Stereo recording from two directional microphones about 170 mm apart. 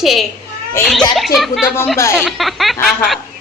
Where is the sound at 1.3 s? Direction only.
Centre (ahead or behind).